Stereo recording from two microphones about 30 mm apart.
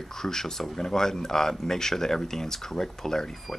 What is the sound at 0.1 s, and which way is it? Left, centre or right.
Speech, centre.